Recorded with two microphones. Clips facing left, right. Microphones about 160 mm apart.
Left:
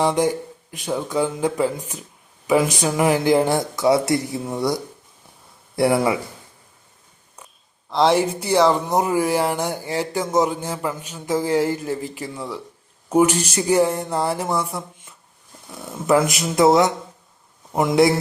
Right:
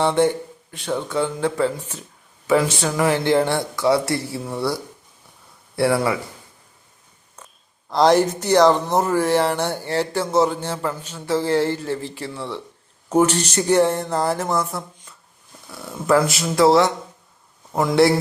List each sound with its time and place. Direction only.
0.0 s speech: 10° left (ahead or behind)
7.9 s speech: centre (ahead or behind)
15.7 s speech: 20° left (ahead or behind)